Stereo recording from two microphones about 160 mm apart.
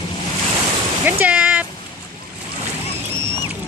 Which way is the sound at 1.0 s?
10° right (ahead or behind).